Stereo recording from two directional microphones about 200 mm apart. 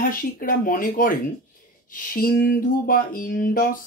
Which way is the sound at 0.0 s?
45° left (ahead or behind).